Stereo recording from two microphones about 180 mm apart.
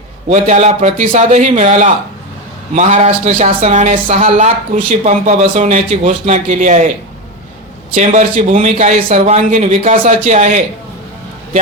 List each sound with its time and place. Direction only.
0.3 s speech: 40° right (ahead or behind)
7.9 s speech: 40° right (ahead or behind)